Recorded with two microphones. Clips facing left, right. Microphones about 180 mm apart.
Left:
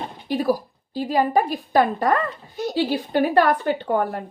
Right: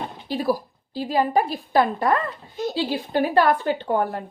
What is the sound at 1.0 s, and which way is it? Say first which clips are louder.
A woman's voice: left 1 dB; 45° left (ahead or behind).